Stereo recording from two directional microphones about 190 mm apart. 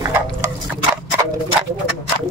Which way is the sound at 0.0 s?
15° right (ahead or behind).